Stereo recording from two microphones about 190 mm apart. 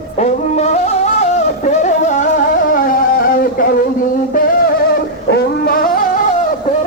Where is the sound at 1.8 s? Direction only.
40° left (ahead or behind).